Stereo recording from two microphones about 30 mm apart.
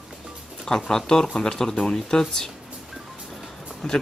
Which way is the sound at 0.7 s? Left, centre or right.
Centre.